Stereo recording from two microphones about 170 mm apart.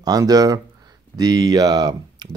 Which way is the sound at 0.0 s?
20° right (ahead or behind).